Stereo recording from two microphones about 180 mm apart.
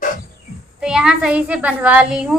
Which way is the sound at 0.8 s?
5° right (ahead or behind).